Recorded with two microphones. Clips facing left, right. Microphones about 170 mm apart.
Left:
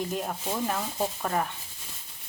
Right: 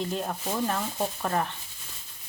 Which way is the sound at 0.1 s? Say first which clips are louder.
Right 1 dB; 5° left (ahead or behind).